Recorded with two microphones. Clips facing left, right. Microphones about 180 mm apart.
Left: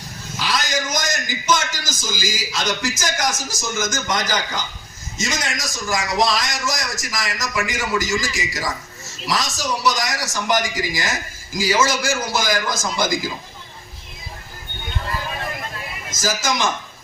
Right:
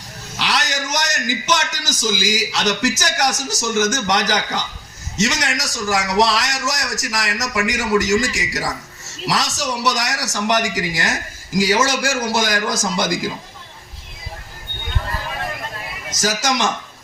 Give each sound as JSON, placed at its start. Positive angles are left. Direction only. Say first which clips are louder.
{"t": 0.3, "sound": "a man's voice", "louder": "even", "side_deg": -70}
{"t": 16.1, "sound": "a man's voice", "louder": "right 2 dB", "side_deg": -75}